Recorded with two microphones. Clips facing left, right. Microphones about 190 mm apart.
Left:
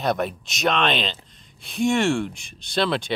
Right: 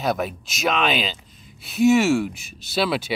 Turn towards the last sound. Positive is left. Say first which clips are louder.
# even
turn(degrees=-5)  # may be behind; listen again after turning